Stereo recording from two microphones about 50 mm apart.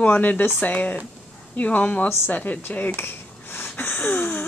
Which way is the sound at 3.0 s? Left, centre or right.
Left.